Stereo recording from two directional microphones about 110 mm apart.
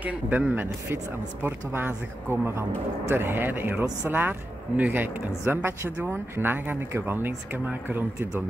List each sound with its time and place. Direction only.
0.0 s speech: 15° right (ahead or behind)